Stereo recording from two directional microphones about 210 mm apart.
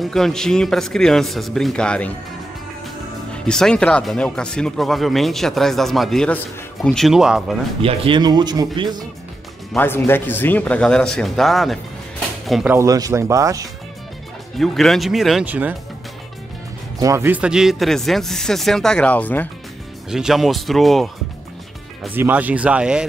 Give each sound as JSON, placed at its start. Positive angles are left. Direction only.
{"t": 0.0, "sound": "speech", "side_deg": 0}
{"t": 3.3, "sound": "speech", "side_deg": 5}
{"t": 7.8, "sound": "speech", "side_deg": -25}
{"t": 9.8, "sound": "speech", "side_deg": 10}
{"t": 12.7, "sound": "speech", "side_deg": -15}
{"t": 14.6, "sound": "speech", "side_deg": 0}
{"t": 17.0, "sound": "speech", "side_deg": -15}